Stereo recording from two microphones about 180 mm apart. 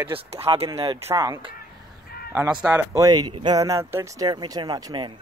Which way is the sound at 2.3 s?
5° right (ahead or behind).